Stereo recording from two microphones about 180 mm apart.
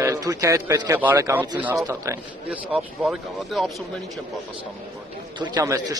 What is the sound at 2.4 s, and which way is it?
Speech, 5° right (ahead or behind).